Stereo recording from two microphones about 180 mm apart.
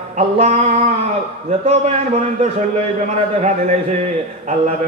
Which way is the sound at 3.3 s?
40° right (ahead or behind).